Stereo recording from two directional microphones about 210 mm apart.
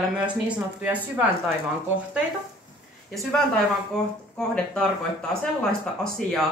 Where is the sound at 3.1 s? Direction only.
Centre (ahead or behind).